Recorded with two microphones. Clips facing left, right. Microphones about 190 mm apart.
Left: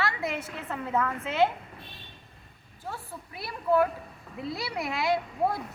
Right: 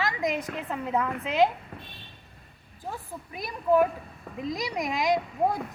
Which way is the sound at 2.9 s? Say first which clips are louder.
Right 2 dB; 15° right (ahead or behind).